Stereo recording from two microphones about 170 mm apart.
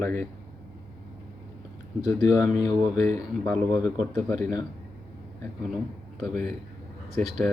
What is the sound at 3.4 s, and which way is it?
Speech, 15° left (ahead or behind).